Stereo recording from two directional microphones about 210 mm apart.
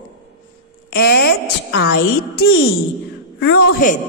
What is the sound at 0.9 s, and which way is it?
A woman's voice, 50° left (ahead or behind).